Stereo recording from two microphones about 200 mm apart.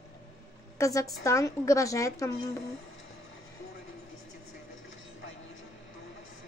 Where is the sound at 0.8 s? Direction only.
15° left (ahead or behind).